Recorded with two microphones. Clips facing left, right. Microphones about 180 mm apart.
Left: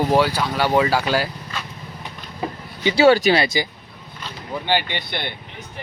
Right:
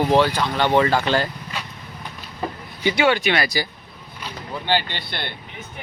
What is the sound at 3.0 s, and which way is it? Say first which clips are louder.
Speech: left 6 dB; 40° left (ahead or behind).